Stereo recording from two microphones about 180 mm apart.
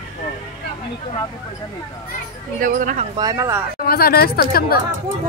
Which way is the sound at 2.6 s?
45° right (ahead or behind).